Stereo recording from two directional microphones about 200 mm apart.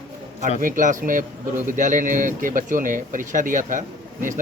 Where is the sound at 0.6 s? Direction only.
40° right (ahead or behind).